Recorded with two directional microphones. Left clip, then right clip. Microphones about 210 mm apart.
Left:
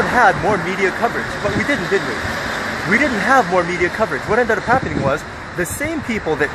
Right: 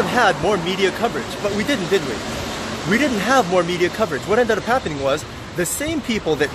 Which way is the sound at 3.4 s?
20° right (ahead or behind).